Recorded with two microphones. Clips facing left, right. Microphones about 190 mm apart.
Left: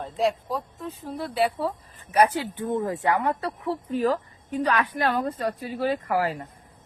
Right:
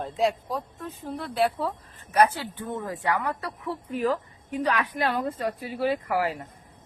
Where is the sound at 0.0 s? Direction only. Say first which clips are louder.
Even; centre (ahead or behind).